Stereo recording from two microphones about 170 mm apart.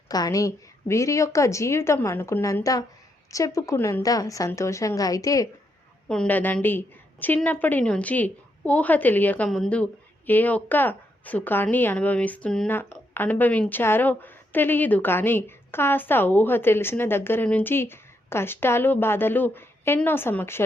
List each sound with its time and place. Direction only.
0.1 s a woman's voice: 20° left (ahead or behind)
6.1 s a woman's voice: 5° left (ahead or behind)